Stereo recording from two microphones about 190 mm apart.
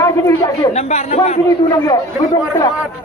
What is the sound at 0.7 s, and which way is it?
Speech, 35° left (ahead or behind).